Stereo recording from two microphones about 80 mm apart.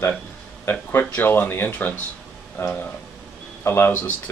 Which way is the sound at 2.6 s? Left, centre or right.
Left.